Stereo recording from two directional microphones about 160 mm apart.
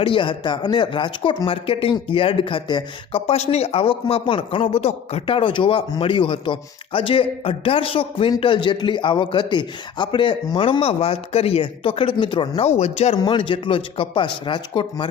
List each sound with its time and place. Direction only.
0.0 s speech: 30° left (ahead or behind)